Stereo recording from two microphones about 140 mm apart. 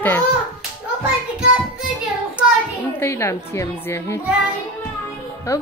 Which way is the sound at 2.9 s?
20° left (ahead or behind).